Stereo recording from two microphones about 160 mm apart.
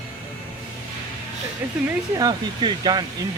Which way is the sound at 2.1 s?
25° right (ahead or behind).